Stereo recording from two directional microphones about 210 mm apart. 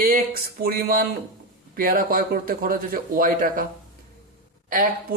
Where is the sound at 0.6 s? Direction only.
45° right (ahead or behind).